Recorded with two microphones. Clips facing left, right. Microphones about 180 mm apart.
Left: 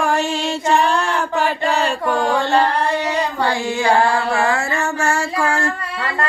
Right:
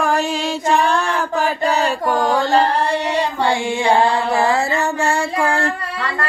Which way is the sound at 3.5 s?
25° right (ahead or behind).